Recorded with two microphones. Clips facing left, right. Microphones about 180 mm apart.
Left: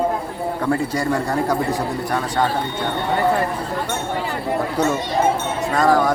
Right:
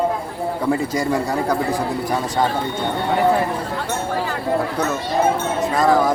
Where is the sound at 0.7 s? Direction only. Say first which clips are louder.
Right 1 dB; 5° right (ahead or behind).